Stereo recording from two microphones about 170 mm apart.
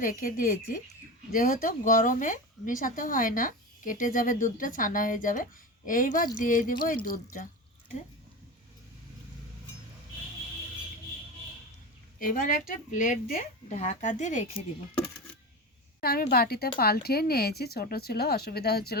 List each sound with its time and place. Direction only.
0.0 s a woman's voice: 55° left (ahead or behind)
12.2 s a woman's voice: 55° left (ahead or behind)
16.0 s speech: 65° left (ahead or behind)